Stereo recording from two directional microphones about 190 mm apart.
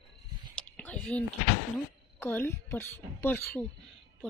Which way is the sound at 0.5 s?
5° left (ahead or behind).